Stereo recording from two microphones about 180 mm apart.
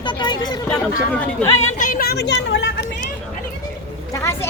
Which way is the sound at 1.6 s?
40° left (ahead or behind).